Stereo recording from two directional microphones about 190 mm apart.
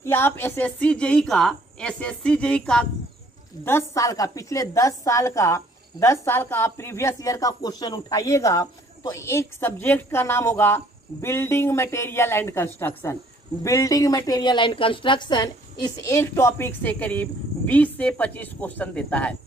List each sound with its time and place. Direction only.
0.0 s a woman's voice: 10° left (ahead or behind)